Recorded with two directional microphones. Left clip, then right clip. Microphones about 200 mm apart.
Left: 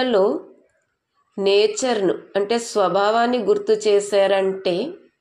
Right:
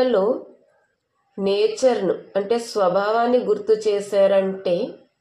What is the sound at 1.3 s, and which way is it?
Speech, 55° left (ahead or behind).